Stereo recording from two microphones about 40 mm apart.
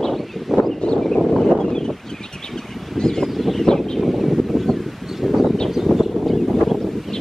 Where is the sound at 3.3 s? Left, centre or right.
Centre.